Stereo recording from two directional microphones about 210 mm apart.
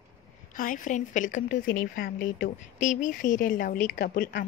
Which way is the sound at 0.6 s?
40° left (ahead or behind).